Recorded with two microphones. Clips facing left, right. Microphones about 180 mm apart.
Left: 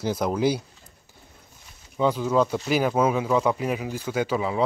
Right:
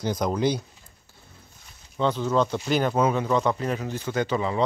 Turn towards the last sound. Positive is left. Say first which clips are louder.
# even
turn(degrees=5)  # may be behind; listen again after turning